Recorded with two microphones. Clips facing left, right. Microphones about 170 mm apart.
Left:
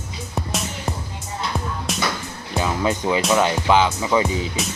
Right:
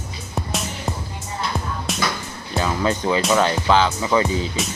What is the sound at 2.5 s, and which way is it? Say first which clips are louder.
Speech: even; 10° left (ahead or behind).